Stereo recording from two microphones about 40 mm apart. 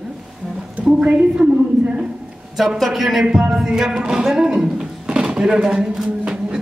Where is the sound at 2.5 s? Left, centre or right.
Centre.